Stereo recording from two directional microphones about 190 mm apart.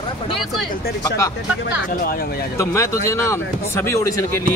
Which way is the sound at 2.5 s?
15° left (ahead or behind).